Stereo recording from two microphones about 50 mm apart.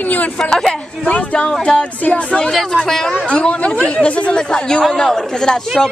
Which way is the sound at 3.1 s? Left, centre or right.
Left.